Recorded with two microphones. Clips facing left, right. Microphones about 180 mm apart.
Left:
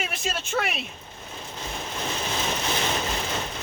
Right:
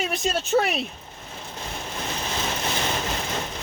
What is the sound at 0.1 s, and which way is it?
Speech, 40° right (ahead or behind).